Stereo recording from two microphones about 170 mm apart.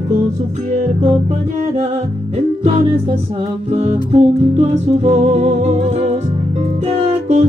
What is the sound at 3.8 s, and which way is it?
Music, 35° right (ahead or behind).